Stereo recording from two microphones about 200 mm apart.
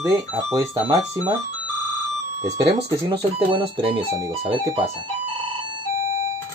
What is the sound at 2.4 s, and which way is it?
Speech, 15° right (ahead or behind).